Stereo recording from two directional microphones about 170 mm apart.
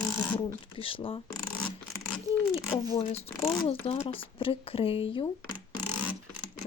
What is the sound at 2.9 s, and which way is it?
Speech, 35° left (ahead or behind).